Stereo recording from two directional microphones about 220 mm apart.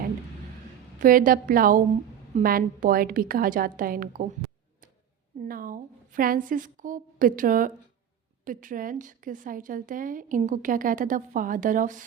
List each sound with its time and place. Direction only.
0.9 s a woman's voice: 40° right (ahead or behind)
5.5 s a woman's voice: 40° right (ahead or behind)